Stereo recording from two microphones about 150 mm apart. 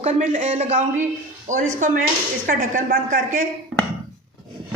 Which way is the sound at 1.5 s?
60° right (ahead or behind).